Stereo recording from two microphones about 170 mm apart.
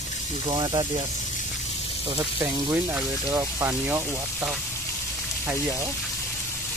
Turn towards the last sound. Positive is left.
turn(degrees=-15)  # may be behind; listen again after turning